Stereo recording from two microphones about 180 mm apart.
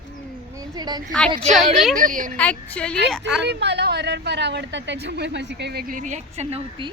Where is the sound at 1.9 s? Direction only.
50° right (ahead or behind).